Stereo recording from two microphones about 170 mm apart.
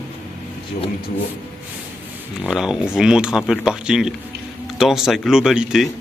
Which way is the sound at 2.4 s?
5° right (ahead or behind).